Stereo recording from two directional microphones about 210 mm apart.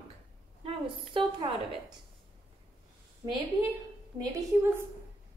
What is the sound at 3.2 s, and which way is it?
A woman's voice, 15° right (ahead or behind).